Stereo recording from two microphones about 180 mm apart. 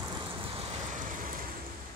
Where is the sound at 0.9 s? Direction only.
45° right (ahead or behind).